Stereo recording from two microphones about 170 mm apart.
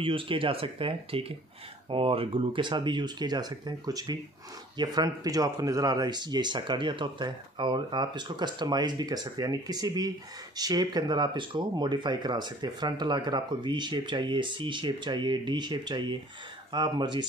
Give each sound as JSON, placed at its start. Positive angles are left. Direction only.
{"t": 0.0, "sound": "speech", "side_deg": -30}